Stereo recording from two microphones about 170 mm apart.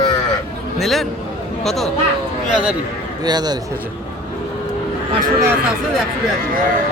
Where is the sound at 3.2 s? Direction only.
25° right (ahead or behind).